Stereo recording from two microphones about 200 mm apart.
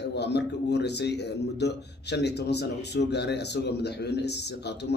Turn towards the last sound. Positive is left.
turn(degrees=55)  # may be behind; listen again after turning